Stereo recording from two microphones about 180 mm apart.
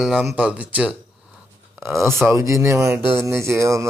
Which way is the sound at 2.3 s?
15° right (ahead or behind).